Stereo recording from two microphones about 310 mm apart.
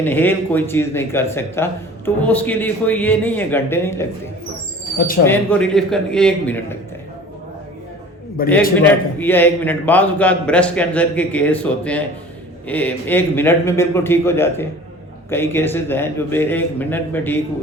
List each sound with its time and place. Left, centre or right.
0.0 s speech: centre
5.2 s a man's voice: centre
8.4 s a man's voice: left
8.9 s a man's voice: centre